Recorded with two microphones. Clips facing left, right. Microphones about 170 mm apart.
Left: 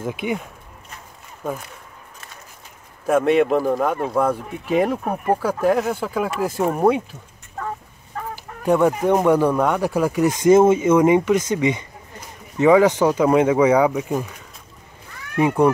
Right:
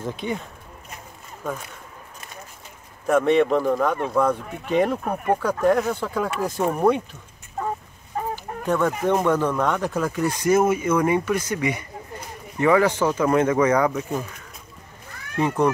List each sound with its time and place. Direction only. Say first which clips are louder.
0.0 s speech: left 3 dB; 10° left (ahead or behind)
3.1 s speech: left 1 dB; 5° left (ahead or behind)
8.6 s speech: left 5 dB; 15° left (ahead or behind)
15.3 s speech: left 4 dB; 10° left (ahead or behind)